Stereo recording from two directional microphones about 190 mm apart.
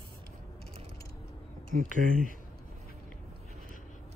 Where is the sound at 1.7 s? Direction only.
45° right (ahead or behind).